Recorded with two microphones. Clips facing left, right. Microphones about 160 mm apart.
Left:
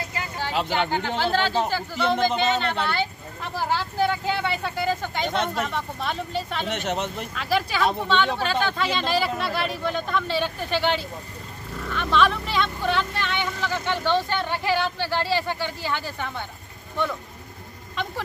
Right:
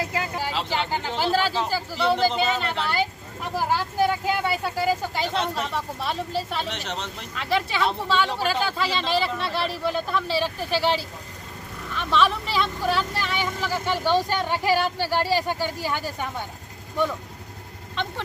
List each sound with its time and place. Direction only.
0.5 s a sound: 50° left (ahead or behind)
0.9 s speech: 10° right (ahead or behind)
6.7 s speech: 50° left (ahead or behind)
7.3 s speech: centre (ahead or behind)